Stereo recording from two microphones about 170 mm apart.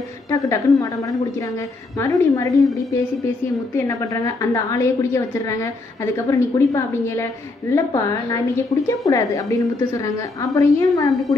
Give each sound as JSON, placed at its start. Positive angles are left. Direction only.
{"t": 0.3, "sound": "a woman's voice", "side_deg": 20}